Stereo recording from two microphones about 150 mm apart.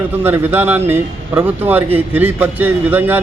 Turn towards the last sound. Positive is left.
turn(degrees=-10)  # may be behind; listen again after turning